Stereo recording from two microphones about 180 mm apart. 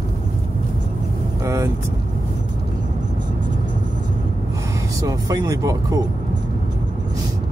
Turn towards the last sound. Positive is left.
turn(degrees=-20)  # may be behind; listen again after turning